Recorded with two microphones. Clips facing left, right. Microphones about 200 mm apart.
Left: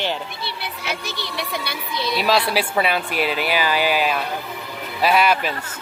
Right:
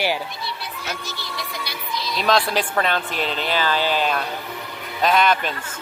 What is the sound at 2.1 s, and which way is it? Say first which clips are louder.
Speech: left 1 dB; 5° left (ahead or behind).